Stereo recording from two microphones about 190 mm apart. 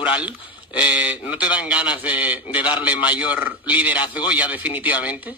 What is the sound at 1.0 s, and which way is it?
A man's voice, 5° right (ahead or behind).